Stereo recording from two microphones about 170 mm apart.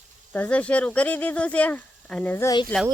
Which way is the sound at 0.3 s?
10° left (ahead or behind).